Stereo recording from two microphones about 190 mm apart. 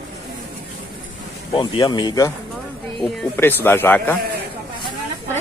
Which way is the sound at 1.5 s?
25° left (ahead or behind).